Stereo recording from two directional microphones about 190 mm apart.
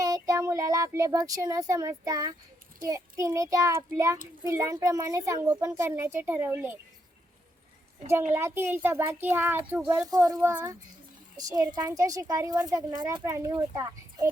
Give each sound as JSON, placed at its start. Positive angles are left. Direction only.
{"t": 0.0, "sound": "a woman's voice", "side_deg": -15}
{"t": 8.3, "sound": "a woman's voice", "side_deg": -15}